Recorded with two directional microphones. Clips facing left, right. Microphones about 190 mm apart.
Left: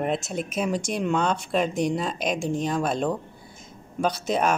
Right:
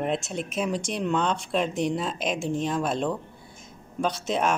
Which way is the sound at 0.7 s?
45° left (ahead or behind).